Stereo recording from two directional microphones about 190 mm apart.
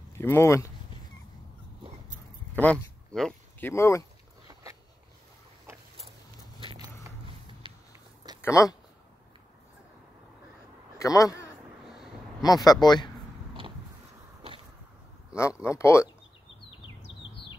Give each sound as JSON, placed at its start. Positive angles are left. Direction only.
{"t": 0.2, "sound": "speech", "side_deg": 15}
{"t": 2.5, "sound": "speech", "side_deg": 5}
{"t": 8.4, "sound": "speech", "side_deg": 15}
{"t": 11.0, "sound": "a man's voice", "side_deg": 20}
{"t": 11.8, "sound": "a sound", "side_deg": 0}
{"t": 12.4, "sound": "speech", "side_deg": 20}
{"t": 15.6, "sound": "speech", "side_deg": 15}
{"t": 17.0, "sound": "chirp", "side_deg": 65}